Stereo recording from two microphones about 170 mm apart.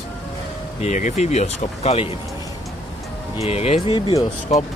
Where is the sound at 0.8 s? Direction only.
45° left (ahead or behind).